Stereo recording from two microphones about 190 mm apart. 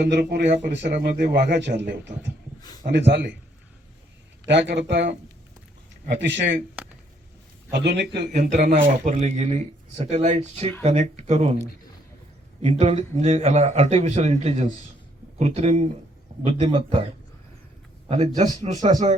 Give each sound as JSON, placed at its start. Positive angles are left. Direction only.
{"t": 0.0, "sound": "a man's voice", "side_deg": -60}
{"t": 0.9, "sound": "a man's voice", "side_deg": -55}
{"t": 2.6, "sound": "a sound", "side_deg": 20}
{"t": 2.8, "sound": "a man's voice", "side_deg": -65}
{"t": 4.4, "sound": "a man's voice", "side_deg": -65}
{"t": 6.1, "sound": "a man's voice", "side_deg": -70}
{"t": 6.8, "sound": "a sound", "side_deg": -5}
{"t": 7.7, "sound": "a man's voice", "side_deg": -60}
{"t": 8.3, "sound": "speech", "side_deg": -40}
{"t": 12.6, "sound": "speech", "side_deg": -35}
{"t": 18.1, "sound": "speech", "side_deg": -35}